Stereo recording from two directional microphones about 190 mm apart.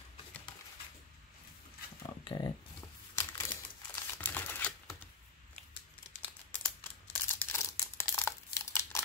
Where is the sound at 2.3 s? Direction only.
20° left (ahead or behind).